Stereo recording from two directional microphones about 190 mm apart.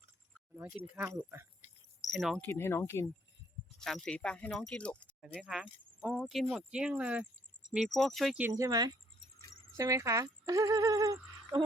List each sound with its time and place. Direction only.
0.5 s speech: 5° right (ahead or behind)
2.0 s speech: centre (ahead or behind)
2.5 s speech: 10° left (ahead or behind)
3.8 s speech: centre (ahead or behind); by 10.2 s 15° right (ahead or behind)
10.4 s a sound: 20° right (ahead or behind)